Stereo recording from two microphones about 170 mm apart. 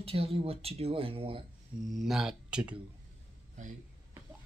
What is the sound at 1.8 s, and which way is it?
Speech, centre (ahead or behind).